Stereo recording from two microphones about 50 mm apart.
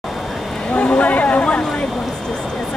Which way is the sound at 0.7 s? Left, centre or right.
Left.